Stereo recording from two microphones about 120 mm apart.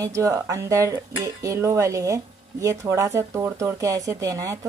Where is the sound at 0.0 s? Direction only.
25° right (ahead or behind).